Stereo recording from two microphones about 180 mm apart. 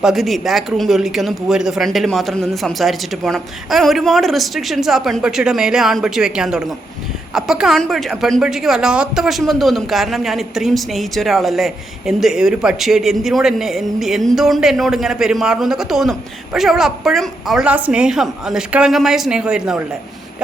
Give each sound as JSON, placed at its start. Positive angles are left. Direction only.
{"t": 0.0, "sound": "speech", "side_deg": 0}